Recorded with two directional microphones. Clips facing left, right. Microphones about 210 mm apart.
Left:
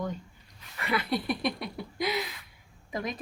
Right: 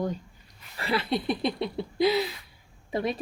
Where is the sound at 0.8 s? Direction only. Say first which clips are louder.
Right 2 dB; 30° right (ahead or behind).